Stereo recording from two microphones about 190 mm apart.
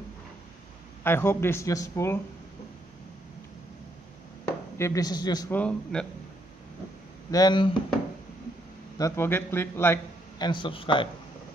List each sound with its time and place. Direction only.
1.0 s speech: 10° left (ahead or behind)
4.5 s speech: 15° left (ahead or behind)
5.5 s speech: 5° left (ahead or behind)
7.2 s speech: 20° left (ahead or behind)
8.9 s speech: 15° left (ahead or behind)
10.4 s speech: 25° left (ahead or behind)